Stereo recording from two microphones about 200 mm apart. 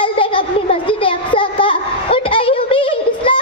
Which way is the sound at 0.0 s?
25° left (ahead or behind).